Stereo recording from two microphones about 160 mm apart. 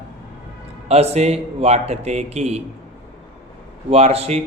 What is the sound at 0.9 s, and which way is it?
A man's voice, 40° right (ahead or behind).